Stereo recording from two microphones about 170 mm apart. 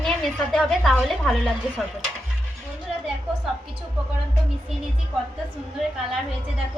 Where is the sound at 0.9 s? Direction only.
Centre (ahead or behind).